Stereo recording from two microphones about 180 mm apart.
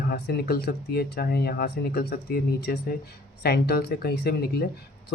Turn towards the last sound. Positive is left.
turn(degrees=60)  # may be behind; listen again after turning